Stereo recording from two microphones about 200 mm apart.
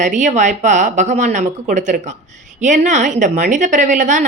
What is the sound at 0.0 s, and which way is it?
Speech, 35° right (ahead or behind).